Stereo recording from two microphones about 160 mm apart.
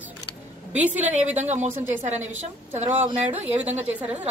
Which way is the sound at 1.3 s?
45° right (ahead or behind).